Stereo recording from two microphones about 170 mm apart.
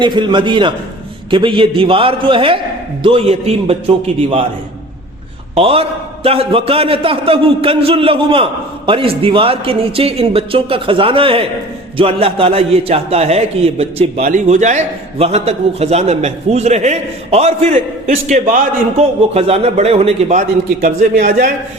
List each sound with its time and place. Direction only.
0.0 s a man's voice: 25° right (ahead or behind)
5.5 s a man's voice: 35° right (ahead or behind)
14.2 s a man's voice: 50° right (ahead or behind)
20.8 s a man's voice: 60° right (ahead or behind)